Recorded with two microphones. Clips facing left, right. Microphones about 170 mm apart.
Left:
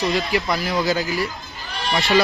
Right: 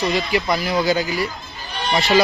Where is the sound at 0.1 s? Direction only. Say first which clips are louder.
Right 1 dB; centre (ahead or behind).